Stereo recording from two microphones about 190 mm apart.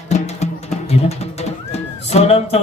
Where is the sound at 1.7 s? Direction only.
35° left (ahead or behind).